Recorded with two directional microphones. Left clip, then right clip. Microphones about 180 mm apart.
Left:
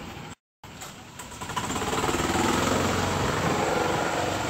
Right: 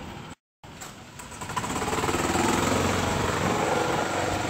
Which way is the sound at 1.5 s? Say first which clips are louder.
Even; 5° right (ahead or behind).